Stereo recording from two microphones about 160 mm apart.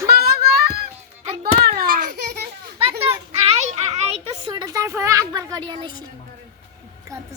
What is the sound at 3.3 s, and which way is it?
Children playing, 40° right (ahead or behind).